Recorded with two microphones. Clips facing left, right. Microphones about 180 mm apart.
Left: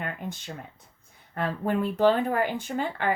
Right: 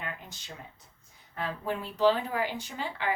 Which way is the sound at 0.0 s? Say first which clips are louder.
Left 7 dB; 55° left (ahead or behind).